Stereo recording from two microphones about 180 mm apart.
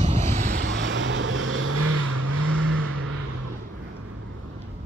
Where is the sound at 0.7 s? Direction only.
90° right.